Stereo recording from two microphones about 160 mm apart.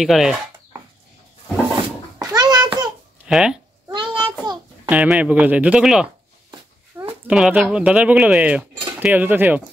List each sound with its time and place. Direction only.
0.0 s speech: centre (ahead or behind)
2.1 s a sound: 25° right (ahead or behind)
3.3 s speech: 5° right (ahead or behind)
3.9 s child singing: 30° right (ahead or behind)
4.8 s speech: 10° right (ahead or behind)
6.9 s a sound: 15° right (ahead or behind)
7.2 s speech: 5° right (ahead or behind)